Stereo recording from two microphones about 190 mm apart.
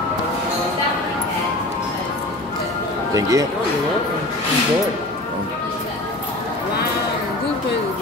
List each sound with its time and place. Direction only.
3.2 s speech: 15° right (ahead or behind)